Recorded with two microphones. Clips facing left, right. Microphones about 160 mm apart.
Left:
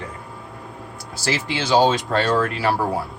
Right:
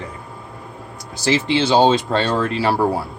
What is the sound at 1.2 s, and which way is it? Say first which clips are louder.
A man's voice: right 7 dB; 25° right (ahead or behind).